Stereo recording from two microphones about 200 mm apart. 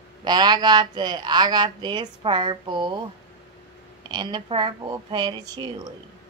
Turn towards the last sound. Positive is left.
turn(degrees=-20)  # may be behind; listen again after turning